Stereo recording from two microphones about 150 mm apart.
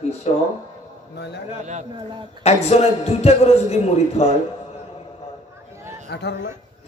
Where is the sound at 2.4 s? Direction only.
45° left (ahead or behind).